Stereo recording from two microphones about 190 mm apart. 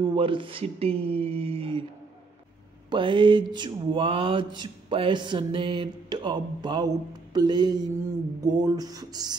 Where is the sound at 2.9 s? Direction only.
25° right (ahead or behind).